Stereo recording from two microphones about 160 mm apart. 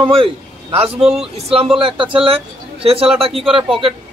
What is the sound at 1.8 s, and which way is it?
A man's voice, 35° right (ahead or behind).